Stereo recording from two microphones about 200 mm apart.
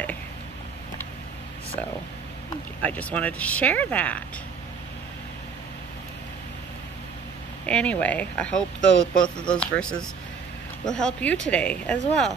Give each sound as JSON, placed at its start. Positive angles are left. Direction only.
{"t": 2.8, "sound": "speech", "side_deg": 5}
{"t": 7.6, "sound": "speech", "side_deg": 5}